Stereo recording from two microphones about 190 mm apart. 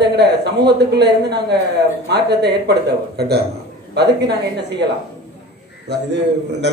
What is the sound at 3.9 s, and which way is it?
Speech, 60° right (ahead or behind).